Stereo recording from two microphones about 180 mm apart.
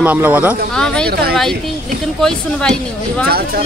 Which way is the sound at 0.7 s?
5° left (ahead or behind).